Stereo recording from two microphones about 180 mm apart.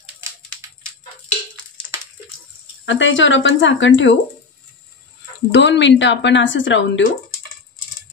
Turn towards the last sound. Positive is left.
turn(degrees=90)